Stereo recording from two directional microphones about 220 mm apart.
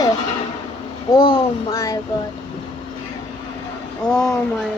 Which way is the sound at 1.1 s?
20° left (ahead or behind).